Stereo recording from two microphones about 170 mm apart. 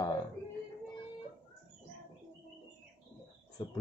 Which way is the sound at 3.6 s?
25° left (ahead or behind).